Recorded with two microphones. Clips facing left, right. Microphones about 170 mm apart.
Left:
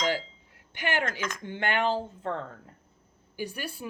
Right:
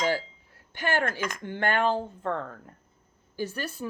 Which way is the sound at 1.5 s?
45° right (ahead or behind).